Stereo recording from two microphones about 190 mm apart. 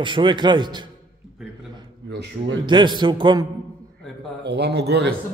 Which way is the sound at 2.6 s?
25° right (ahead or behind).